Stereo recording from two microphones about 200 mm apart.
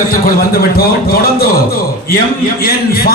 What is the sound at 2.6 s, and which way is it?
Speech, 50° left (ahead or behind).